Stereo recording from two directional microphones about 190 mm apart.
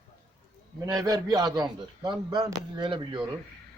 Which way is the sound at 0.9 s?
20° right (ahead or behind).